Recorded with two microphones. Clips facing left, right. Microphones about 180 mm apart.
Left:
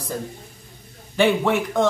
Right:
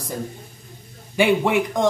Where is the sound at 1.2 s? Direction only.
10° right (ahead or behind).